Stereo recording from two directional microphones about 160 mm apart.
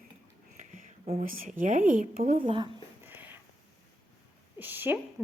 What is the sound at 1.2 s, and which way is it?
Speech, 60° right (ahead or behind).